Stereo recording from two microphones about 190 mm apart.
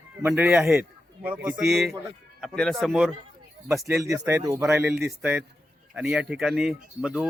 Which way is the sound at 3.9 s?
15° right (ahead or behind).